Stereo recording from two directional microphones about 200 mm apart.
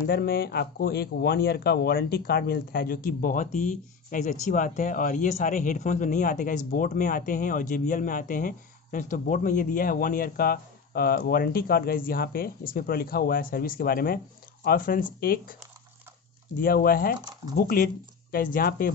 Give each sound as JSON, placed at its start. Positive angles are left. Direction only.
{"t": 0.0, "sound": "speech", "side_deg": 50}
{"t": 16.5, "sound": "speech", "side_deg": 45}